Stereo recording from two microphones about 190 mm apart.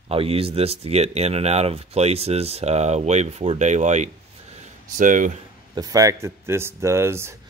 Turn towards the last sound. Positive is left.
turn(degrees=-15)  # may be behind; listen again after turning